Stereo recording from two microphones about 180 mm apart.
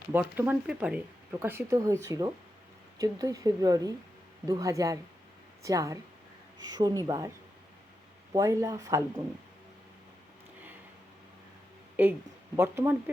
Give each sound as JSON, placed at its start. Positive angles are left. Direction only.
{"t": 0.1, "sound": "speech", "side_deg": -10}
{"t": 8.3, "sound": "speech", "side_deg": -20}
{"t": 12.5, "sound": "speech", "side_deg": -15}